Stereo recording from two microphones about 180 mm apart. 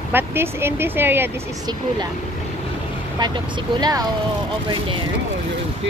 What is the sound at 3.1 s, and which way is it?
Speech, 25° right (ahead or behind).